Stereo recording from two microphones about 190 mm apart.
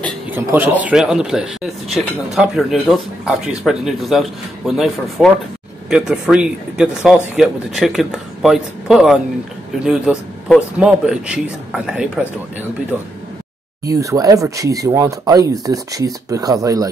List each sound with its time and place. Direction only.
0.3 s speech: 10° right (ahead or behind)
13.8 s speech: 20° right (ahead or behind)